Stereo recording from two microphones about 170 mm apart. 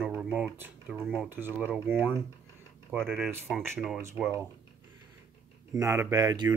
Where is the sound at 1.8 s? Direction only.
15° right (ahead or behind).